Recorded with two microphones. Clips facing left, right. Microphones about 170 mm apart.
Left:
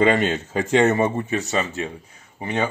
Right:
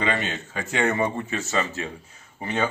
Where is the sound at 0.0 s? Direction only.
45° left (ahead or behind); by 1.1 s 25° left (ahead or behind).